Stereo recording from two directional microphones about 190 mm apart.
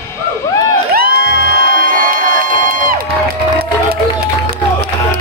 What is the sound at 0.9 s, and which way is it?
Music, 55° right (ahead or behind).